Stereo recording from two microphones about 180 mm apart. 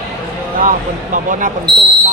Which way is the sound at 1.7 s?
25° right (ahead or behind).